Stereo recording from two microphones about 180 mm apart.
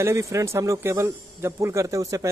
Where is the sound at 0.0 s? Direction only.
15° right (ahead or behind).